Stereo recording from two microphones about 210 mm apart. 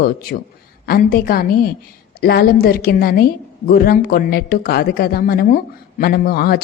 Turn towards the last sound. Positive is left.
turn(degrees=45)  # may be behind; listen again after turning